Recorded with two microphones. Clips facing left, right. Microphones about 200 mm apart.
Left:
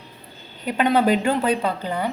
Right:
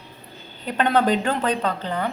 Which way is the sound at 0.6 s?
10° left (ahead or behind).